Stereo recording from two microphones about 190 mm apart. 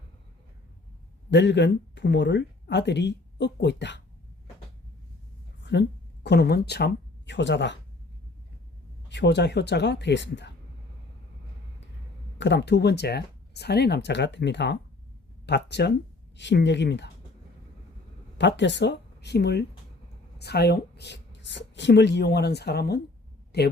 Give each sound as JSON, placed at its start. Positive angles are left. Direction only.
{"t": 1.3, "sound": "speech", "side_deg": 65}
{"t": 5.7, "sound": "speech", "side_deg": 65}
{"t": 9.0, "sound": "speech", "side_deg": 65}
{"t": 12.4, "sound": "speech", "side_deg": 65}
{"t": 18.3, "sound": "speech", "side_deg": 70}